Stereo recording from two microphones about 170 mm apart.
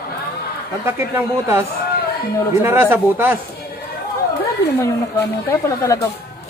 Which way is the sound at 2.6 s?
15° right (ahead or behind).